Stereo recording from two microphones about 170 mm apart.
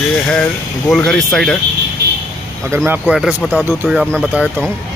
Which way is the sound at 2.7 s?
10° right (ahead or behind).